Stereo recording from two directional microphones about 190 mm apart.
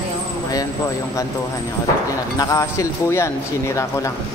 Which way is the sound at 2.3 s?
15° left (ahead or behind).